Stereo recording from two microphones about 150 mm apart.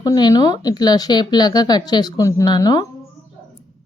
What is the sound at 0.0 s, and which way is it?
Speech, 25° left (ahead or behind).